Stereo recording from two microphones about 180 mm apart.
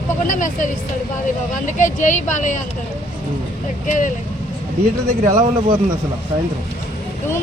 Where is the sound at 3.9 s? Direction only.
45° left (ahead or behind).